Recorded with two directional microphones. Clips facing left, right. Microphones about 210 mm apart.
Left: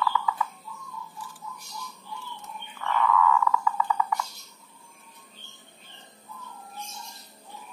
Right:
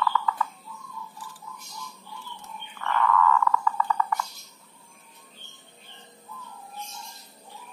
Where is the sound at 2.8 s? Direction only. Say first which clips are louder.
Even; 5° left (ahead or behind).